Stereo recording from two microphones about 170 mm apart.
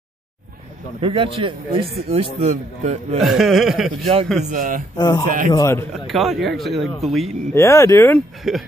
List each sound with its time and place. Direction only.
1.0 s a man's voice: 30° right (ahead or behind)
3.2 s speech: centre (ahead or behind)
4.0 s a man's voice: 35° right (ahead or behind)
4.5 s a man's voice: 55° right (ahead or behind)
4.9 s speech: 25° left (ahead or behind)
6.0 s speech: centre (ahead or behind)
7.5 s speech: 15° left (ahead or behind)
8.5 s speech: centre (ahead or behind)